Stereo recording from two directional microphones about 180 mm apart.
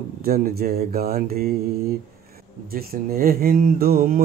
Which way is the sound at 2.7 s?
55° right (ahead or behind).